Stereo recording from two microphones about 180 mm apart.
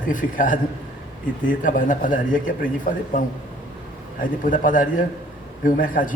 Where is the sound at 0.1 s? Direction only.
45° left (ahead or behind).